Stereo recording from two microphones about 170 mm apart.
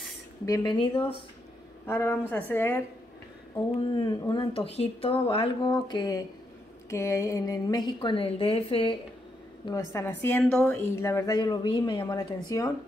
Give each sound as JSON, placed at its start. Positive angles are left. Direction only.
{"t": 0.5, "sound": "a woman's voice", "side_deg": 20}
{"t": 1.9, "sound": "a woman's voice", "side_deg": 15}
{"t": 3.7, "sound": "a woman's voice", "side_deg": 30}
{"t": 9.7, "sound": "a woman's voice", "side_deg": 15}